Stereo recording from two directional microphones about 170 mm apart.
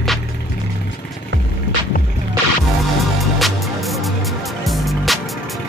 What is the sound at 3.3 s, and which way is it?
Music, centre (ahead or behind).